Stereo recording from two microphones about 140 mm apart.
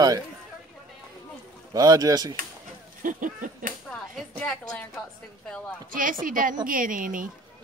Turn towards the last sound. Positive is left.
turn(degrees=-75)  # may be behind; listen again after turning